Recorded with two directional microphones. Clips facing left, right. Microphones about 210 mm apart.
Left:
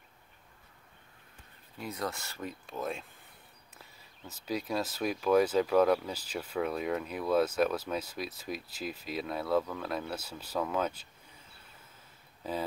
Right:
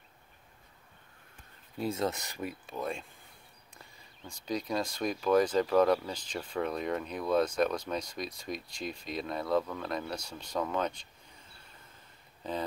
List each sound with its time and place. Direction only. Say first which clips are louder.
1.8 s speech: right 5 dB; 25° right (ahead or behind)
2.6 s speech: even; centre (ahead or behind)
4.3 s speech: even; 5° left (ahead or behind)
12.4 s speech: even; 5° left (ahead or behind)